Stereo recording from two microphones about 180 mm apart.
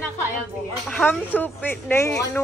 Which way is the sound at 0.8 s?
10° left (ahead or behind).